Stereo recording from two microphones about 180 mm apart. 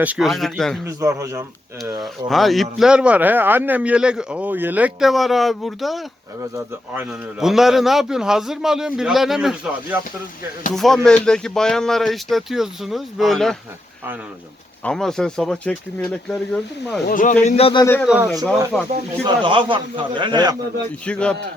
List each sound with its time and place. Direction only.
0.0 s speech: 5° right (ahead or behind)
0.9 s a man's voice: 15° right (ahead or behind)
2.0 s speech: centre (ahead or behind)
14.8 s speech: 5° left (ahead or behind)
17.1 s speech: 50° left (ahead or behind)
17.4 s a man's voice: 30° left (ahead or behind)
18.0 s a man's voice: 5° right (ahead or behind)
19.2 s a man's voice: 25° right (ahead or behind)
21.0 s speech: 5° left (ahead or behind)